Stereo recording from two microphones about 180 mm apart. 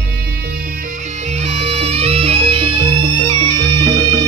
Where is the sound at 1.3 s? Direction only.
40° right (ahead or behind).